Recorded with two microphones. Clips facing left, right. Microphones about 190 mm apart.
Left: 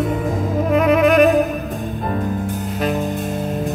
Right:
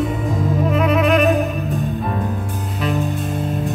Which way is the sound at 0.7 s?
50° left (ahead or behind).